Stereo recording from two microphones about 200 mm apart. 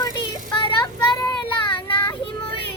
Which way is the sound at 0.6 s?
20° left (ahead or behind).